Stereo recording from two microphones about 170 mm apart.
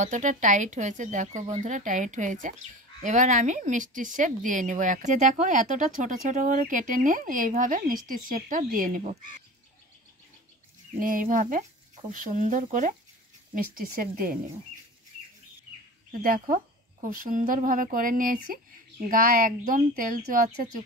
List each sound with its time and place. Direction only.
0.0 s speech: 45° right (ahead or behind)
11.0 s speech: 55° right (ahead or behind)
16.1 s speech: 55° right (ahead or behind)